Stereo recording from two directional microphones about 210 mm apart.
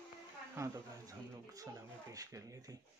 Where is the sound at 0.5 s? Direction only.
15° right (ahead or behind).